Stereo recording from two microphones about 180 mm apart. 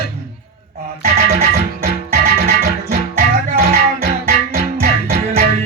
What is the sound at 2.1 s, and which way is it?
Music, 55° right (ahead or behind).